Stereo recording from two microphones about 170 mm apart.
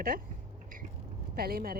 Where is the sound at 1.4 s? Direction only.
60° right (ahead or behind).